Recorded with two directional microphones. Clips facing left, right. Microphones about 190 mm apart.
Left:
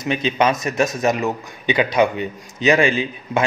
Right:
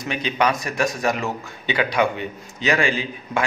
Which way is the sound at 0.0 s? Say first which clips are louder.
Left 3 dB; 20° left (ahead or behind).